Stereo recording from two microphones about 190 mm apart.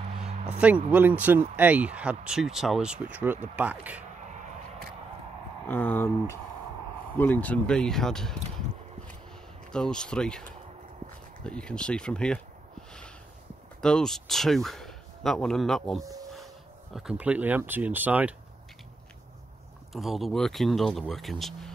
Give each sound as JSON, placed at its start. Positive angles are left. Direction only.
{"t": 0.2, "sound": "speech", "side_deg": -5}
{"t": 5.7, "sound": "speech", "side_deg": 10}
{"t": 11.4, "sound": "speech", "side_deg": 5}
{"t": 13.7, "sound": "speech", "side_deg": 5}
{"t": 16.0, "sound": "speech", "side_deg": -20}
{"t": 16.9, "sound": "speech", "side_deg": -5}
{"t": 19.9, "sound": "speech", "side_deg": 0}